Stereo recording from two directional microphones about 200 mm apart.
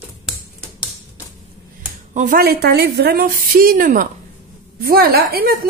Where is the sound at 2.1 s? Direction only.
45° right (ahead or behind).